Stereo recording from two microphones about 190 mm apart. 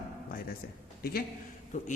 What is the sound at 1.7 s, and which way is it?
Speech, 40° left (ahead or behind).